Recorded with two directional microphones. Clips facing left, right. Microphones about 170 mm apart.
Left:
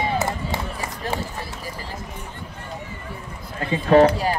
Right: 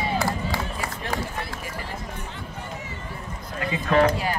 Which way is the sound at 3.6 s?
35° left (ahead or behind).